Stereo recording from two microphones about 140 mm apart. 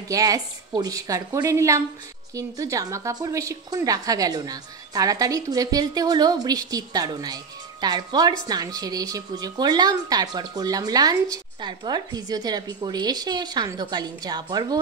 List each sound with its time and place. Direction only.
0.1 s speech: 25° right (ahead or behind)